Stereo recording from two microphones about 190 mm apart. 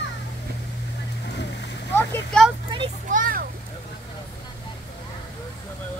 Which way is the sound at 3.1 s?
45° right (ahead or behind).